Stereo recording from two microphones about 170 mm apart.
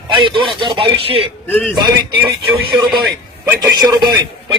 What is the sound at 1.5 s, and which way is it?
Speech, 10° left (ahead or behind).